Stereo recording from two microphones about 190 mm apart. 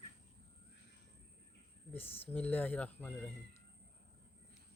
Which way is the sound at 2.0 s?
30° left (ahead or behind).